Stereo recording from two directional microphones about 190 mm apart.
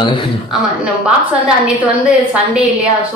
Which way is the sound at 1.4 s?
5° right (ahead or behind).